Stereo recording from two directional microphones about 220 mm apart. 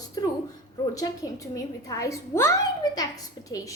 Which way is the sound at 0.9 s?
15° left (ahead or behind).